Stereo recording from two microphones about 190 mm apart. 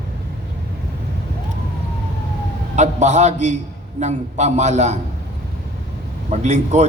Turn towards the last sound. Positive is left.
turn(degrees=-40)  # may be behind; listen again after turning